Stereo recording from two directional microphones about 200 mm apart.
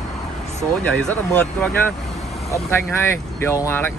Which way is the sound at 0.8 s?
5° left (ahead or behind).